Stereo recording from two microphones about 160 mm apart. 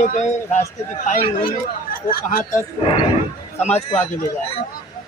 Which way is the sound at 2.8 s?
35° left (ahead or behind).